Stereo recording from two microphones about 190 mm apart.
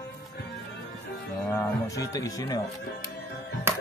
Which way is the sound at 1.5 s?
15° left (ahead or behind).